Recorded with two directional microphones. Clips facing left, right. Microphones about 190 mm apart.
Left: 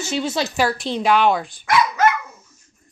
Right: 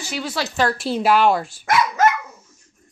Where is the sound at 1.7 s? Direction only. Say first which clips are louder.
Even; 40° right (ahead or behind).